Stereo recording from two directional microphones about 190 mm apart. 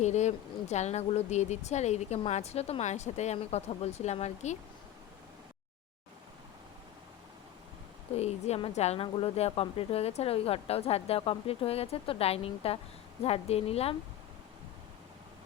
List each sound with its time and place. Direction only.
0.0 s speech: 35° left (ahead or behind)
8.1 s speech: 35° left (ahead or behind)